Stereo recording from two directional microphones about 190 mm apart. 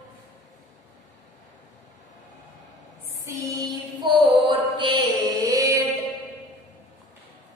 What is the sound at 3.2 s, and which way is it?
Music, 20° right (ahead or behind).